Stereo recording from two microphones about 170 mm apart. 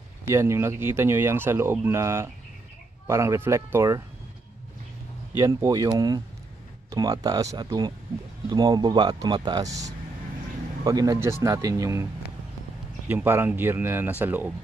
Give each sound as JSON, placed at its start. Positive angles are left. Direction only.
{"t": 0.3, "sound": "speech", "side_deg": -15}
{"t": 5.4, "sound": "speech", "side_deg": -20}
{"t": 13.1, "sound": "speech", "side_deg": -10}